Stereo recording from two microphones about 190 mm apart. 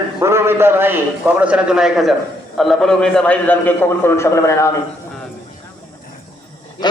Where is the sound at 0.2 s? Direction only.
15° right (ahead or behind); by 4.7 s 15° left (ahead or behind).